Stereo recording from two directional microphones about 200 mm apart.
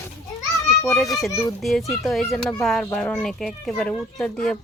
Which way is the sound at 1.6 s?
Centre (ahead or behind).